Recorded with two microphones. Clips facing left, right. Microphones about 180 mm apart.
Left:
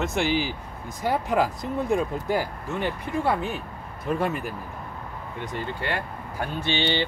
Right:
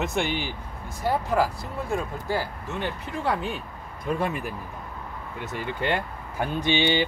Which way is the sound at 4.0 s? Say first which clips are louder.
Left 1 dB; centre (ahead or behind).